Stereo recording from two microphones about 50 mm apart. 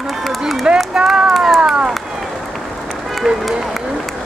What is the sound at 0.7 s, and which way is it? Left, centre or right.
Run, centre.